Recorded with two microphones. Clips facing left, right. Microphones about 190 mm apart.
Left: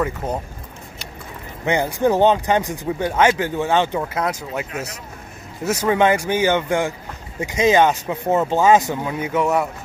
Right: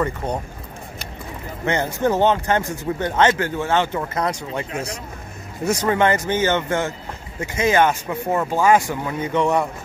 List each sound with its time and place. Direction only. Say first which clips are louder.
0.0 s speech: even; 5° left (ahead or behind)
1.7 s speech: left 2 dB; 15° left (ahead or behind)
4.0 s speech: even; 5° left (ahead or behind); by 9.1 s 20° left (ahead or behind)
9.2 s speech: right 1 dB; 5° left (ahead or behind)